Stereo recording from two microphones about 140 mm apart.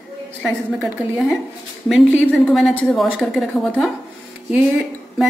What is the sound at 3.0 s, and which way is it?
Speech, centre (ahead or behind).